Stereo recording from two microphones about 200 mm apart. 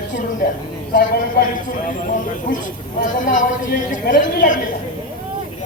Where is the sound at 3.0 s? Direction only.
40° left (ahead or behind).